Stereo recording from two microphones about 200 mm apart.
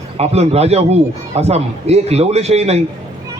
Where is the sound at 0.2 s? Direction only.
30° right (ahead or behind).